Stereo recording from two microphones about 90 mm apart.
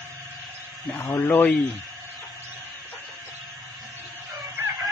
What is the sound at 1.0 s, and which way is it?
Speech, 30° left (ahead or behind).